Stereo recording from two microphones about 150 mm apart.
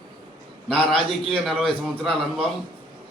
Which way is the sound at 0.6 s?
Centre (ahead or behind).